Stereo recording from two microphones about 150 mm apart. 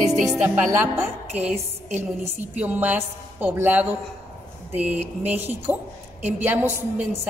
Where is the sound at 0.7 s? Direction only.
20° right (ahead or behind).